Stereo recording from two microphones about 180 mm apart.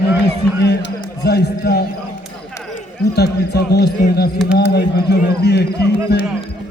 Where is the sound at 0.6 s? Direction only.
70° left (ahead or behind).